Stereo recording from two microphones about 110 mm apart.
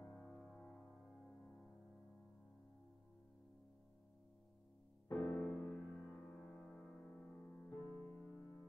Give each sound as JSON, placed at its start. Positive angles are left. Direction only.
{"t": 0.2, "sound": "music", "side_deg": 10}
{"t": 5.0, "sound": "music", "side_deg": 25}
{"t": 5.3, "sound": "music", "side_deg": 10}
{"t": 5.9, "sound": "music", "side_deg": 25}
{"t": 6.2, "sound": "music", "side_deg": 10}